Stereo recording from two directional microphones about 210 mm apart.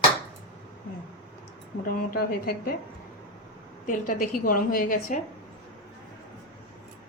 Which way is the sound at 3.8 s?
40° left (ahead or behind).